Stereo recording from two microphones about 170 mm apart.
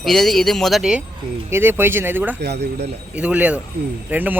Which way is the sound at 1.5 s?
15° right (ahead or behind).